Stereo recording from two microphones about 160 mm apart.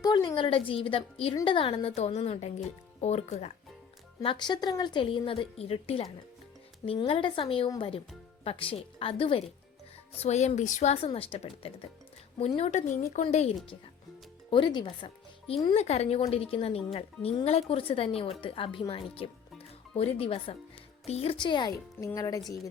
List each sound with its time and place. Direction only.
0.0 s speech: 25° left (ahead or behind); by 3.5 s 40° left (ahead or behind)
4.2 s speech: 30° left (ahead or behind)
14.5 s speech: 30° left (ahead or behind)